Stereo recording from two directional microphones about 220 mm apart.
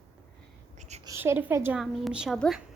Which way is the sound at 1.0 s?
10° right (ahead or behind).